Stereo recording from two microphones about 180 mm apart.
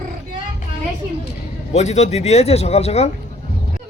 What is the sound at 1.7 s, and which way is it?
Speech, 40° left (ahead or behind).